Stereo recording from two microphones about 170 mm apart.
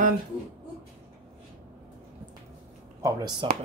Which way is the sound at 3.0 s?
20° right (ahead or behind).